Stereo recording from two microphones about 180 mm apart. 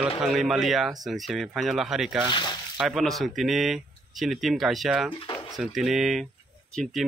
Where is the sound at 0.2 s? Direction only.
Centre (ahead or behind).